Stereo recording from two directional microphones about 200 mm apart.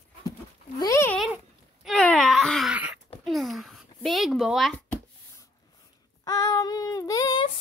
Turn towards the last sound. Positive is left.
turn(degrees=25)  # may be behind; listen again after turning